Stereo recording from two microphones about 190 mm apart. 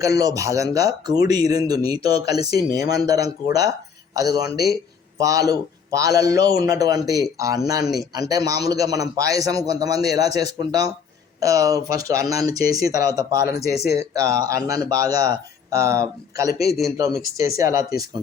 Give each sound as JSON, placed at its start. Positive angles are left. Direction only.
{"t": 0.0, "sound": "speech", "side_deg": -20}